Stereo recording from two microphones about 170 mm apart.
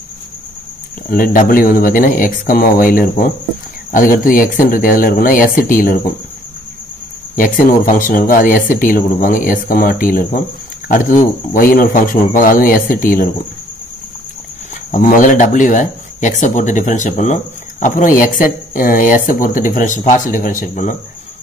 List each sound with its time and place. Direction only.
1.1 s speech: 55° left (ahead or behind)
7.3 s speech: 50° left (ahead or behind)
14.9 s speech: 50° left (ahead or behind)